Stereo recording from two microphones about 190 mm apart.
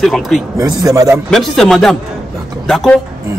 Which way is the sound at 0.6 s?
20° right (ahead or behind).